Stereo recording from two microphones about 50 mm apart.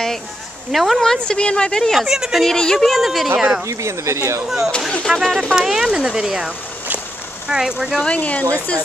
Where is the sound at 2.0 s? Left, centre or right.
Centre.